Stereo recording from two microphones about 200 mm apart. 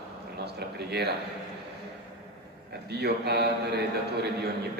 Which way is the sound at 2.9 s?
55° right (ahead or behind).